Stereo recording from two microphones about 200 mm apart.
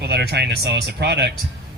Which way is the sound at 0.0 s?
55° right (ahead or behind).